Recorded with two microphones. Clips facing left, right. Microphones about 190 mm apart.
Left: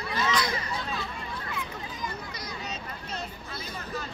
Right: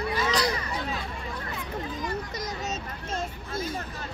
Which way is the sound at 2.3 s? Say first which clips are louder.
Right 5 dB; 45° right (ahead or behind).